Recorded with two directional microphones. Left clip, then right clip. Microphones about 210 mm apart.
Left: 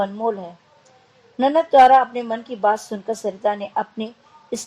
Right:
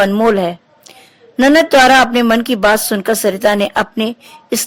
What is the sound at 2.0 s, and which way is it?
Speech, 35° right (ahead or behind).